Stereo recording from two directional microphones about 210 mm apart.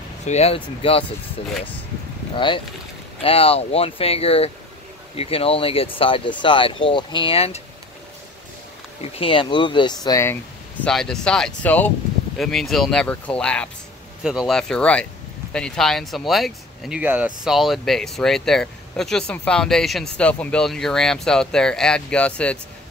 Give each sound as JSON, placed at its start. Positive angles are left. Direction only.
{"t": 0.2, "sound": "speech", "side_deg": 30}
{"t": 2.3, "sound": "speech", "side_deg": 25}
{"t": 9.2, "sound": "speech", "side_deg": 25}